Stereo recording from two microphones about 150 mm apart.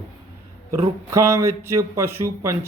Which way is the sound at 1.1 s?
20° right (ahead or behind).